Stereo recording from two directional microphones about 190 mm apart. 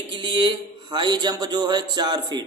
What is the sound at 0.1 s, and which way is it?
A man's voice, 25° right (ahead or behind).